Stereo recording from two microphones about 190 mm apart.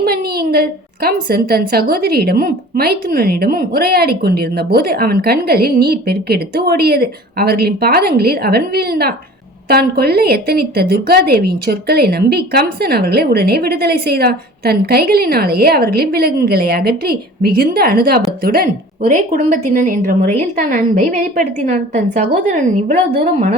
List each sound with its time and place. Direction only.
0.0 s a woman's voice: 55° right (ahead or behind); by 23.0 s 40° right (ahead or behind)